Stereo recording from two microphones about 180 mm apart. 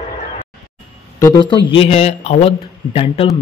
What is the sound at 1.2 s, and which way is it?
Speech, 25° left (ahead or behind).